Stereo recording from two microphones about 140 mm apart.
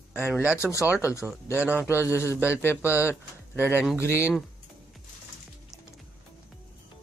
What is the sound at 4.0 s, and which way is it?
Speech, 20° left (ahead or behind).